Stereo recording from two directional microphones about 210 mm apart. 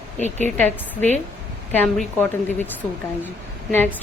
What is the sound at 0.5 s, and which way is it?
A woman's voice, 10° left (ahead or behind).